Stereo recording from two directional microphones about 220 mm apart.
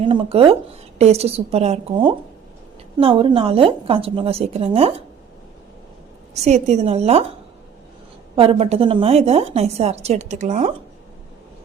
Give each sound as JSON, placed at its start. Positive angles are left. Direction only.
{"t": 0.0, "sound": "a woman's voice", "side_deg": -20}
{"t": 6.3, "sound": "a woman's voice", "side_deg": -30}
{"t": 8.4, "sound": "a woman's voice", "side_deg": -25}